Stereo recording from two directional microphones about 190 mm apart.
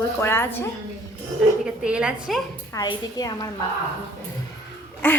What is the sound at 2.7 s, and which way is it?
Speech, 20° left (ahead or behind).